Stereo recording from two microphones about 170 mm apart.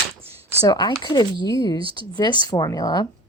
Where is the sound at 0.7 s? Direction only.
25° left (ahead or behind).